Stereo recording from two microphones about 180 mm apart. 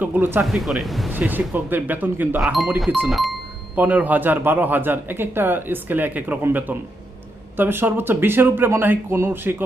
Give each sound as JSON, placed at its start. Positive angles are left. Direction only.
{"t": 0.0, "sound": "a man's voice", "side_deg": -10}